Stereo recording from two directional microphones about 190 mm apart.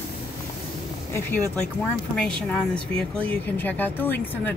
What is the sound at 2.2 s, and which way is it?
Speech, 5° left (ahead or behind).